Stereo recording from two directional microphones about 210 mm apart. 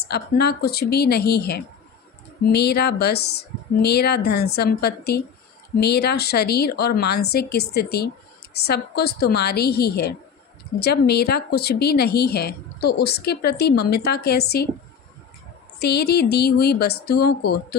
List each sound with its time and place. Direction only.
0.0 s a woman's voice: 50° left (ahead or behind)
15.8 s a woman's voice: 50° left (ahead or behind)